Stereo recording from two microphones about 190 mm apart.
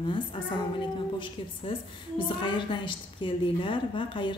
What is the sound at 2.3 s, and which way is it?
A woman's voice, 25° left (ahead or behind).